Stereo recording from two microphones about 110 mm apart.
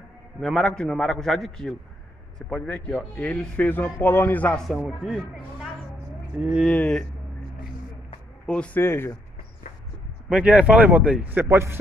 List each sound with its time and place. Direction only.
0.4 s a man's voice: 5° left (ahead or behind)
4.8 s a man's voice: 5° right (ahead or behind)
6.6 s a man's voice: 5° left (ahead or behind)
8.5 s a man's voice: 10° left (ahead or behind)
8.8 s speech: 20° left (ahead or behind)
10.3 s a man's voice: 10° right (ahead or behind)